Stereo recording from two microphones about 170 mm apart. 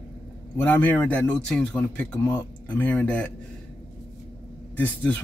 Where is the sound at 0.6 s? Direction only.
10° left (ahead or behind).